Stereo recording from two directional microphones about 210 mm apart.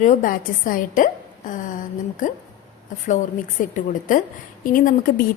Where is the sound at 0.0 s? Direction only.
35° left (ahead or behind).